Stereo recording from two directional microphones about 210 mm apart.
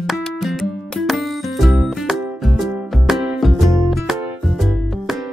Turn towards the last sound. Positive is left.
turn(degrees=0)  # may be behind; listen again after turning